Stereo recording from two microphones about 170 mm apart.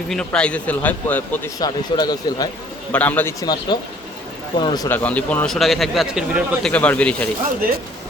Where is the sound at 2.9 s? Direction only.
10° left (ahead or behind).